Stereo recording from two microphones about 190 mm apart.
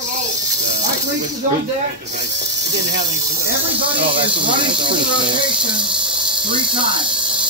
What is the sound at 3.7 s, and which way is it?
Speech, 25° right (ahead or behind).